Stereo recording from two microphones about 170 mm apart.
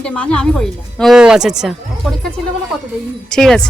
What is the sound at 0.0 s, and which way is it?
Speech, 5° left (ahead or behind).